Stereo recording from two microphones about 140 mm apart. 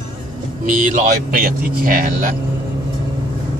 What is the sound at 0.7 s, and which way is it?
Speech, 65° right (ahead or behind).